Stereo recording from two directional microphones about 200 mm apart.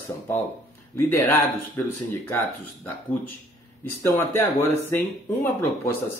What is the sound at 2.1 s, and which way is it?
Speech, 10° left (ahead or behind).